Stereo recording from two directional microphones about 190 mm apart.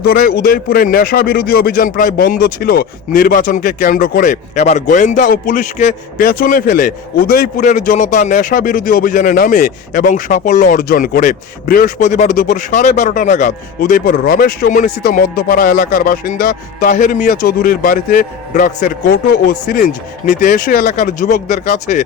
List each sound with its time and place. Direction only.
0.0 s a man's voice: 50° left (ahead or behind)